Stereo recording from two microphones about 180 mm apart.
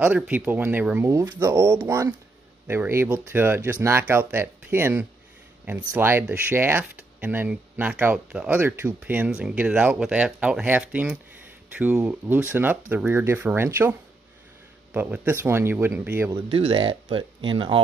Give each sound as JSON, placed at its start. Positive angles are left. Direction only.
{"t": 0.0, "sound": "speech", "side_deg": -10}
{"t": 15.0, "sound": "speech", "side_deg": -10}